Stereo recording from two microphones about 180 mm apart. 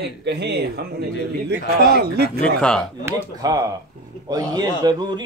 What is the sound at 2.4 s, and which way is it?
Speech, 5° left (ahead or behind).